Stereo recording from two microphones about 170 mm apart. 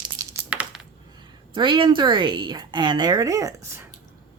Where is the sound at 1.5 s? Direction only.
25° right (ahead or behind).